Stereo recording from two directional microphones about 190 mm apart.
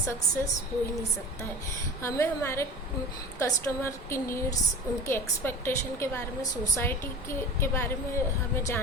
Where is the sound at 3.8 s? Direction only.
15° left (ahead or behind).